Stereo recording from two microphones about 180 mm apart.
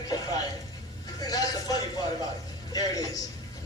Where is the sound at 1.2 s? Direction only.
20° left (ahead or behind).